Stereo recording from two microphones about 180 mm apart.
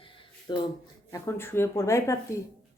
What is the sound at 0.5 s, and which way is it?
Speech, 25° left (ahead or behind).